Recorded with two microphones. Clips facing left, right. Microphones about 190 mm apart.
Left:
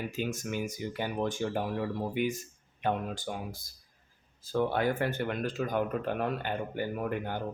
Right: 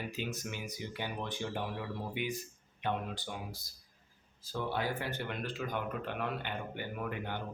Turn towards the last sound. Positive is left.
turn(degrees=45)  # may be behind; listen again after turning